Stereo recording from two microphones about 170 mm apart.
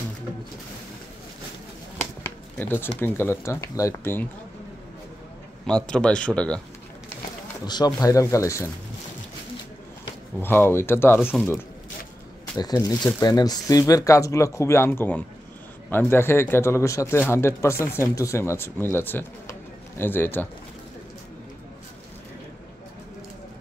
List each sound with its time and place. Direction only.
2.0 s a sound: 10° left (ahead or behind)
3.0 s speech: 15° left (ahead or behind)
5.7 s speech: 5° left (ahead or behind)
7.6 s speech: 25° left (ahead or behind)
10.4 s speech: 15° left (ahead or behind)